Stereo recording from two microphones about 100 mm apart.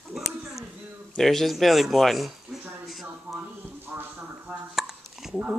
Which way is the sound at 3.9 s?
20° right (ahead or behind).